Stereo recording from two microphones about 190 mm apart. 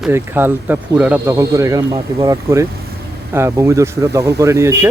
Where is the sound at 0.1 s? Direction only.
10° right (ahead or behind).